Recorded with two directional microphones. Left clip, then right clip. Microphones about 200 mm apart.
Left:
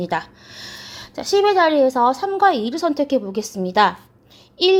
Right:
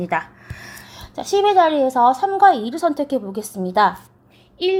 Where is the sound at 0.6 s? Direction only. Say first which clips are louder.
Left 4 dB; 20° left (ahead or behind).